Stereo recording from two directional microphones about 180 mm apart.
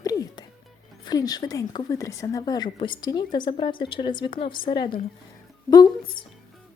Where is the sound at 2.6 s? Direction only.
35° left (ahead or behind).